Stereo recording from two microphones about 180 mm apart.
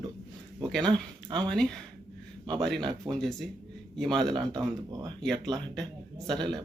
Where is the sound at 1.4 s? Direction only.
5° left (ahead or behind).